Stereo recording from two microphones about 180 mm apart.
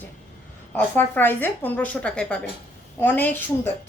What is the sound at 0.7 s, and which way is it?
A woman's voice, 10° left (ahead or behind).